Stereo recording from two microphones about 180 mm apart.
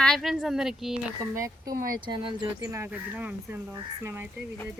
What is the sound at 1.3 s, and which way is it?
Speech, 20° right (ahead or behind).